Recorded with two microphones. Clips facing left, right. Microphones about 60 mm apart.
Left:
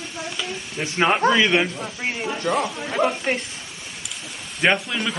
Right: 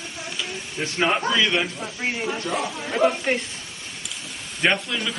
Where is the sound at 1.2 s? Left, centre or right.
Left.